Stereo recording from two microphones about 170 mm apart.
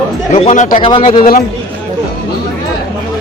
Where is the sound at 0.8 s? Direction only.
30° left (ahead or behind).